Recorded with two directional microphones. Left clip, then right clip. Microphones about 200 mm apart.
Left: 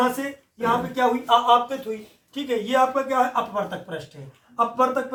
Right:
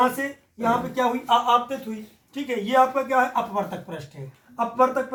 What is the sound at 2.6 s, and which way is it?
Speech, 15° left (ahead or behind).